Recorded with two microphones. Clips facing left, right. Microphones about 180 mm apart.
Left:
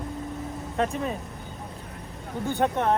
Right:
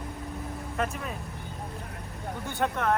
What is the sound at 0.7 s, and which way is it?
Speech, 30° left (ahead or behind).